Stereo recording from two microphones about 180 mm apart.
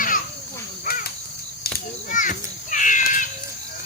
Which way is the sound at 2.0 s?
45° left (ahead or behind).